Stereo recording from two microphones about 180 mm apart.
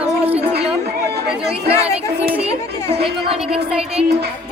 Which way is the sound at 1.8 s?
35° right (ahead or behind).